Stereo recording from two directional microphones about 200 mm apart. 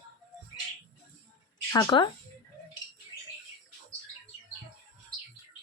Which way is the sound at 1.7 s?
25° left (ahead or behind).